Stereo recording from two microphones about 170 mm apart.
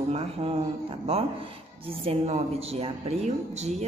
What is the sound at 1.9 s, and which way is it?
A woman's voice, 35° right (ahead or behind).